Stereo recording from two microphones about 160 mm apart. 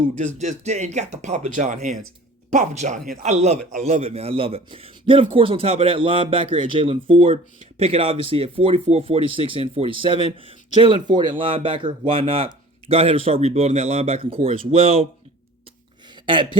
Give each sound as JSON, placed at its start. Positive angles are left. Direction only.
{"t": 0.3, "sound": "speech", "side_deg": -45}
{"t": 16.2, "sound": "speech", "side_deg": -30}